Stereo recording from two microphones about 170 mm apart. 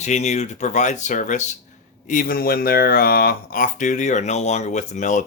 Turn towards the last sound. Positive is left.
turn(degrees=45)  # may be behind; listen again after turning